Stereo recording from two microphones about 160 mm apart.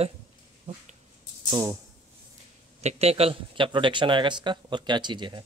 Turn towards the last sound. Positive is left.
turn(degrees=-30)  # may be behind; listen again after turning